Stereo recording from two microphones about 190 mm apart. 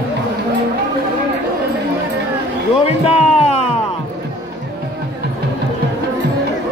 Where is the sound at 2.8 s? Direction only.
35° left (ahead or behind).